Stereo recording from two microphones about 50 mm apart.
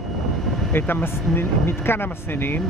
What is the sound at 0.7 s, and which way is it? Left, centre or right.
Speech, left.